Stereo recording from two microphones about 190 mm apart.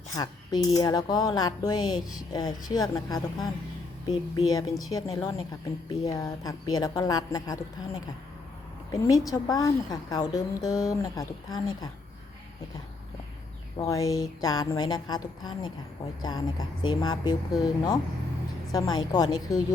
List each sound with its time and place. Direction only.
0.1 s a woman's voice: 20° left (ahead or behind)
8.9 s a woman's voice: 20° left (ahead or behind)
13.7 s a woman's voice: 15° left (ahead or behind)